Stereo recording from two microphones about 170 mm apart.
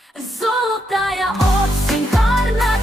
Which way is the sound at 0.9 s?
Centre (ahead or behind).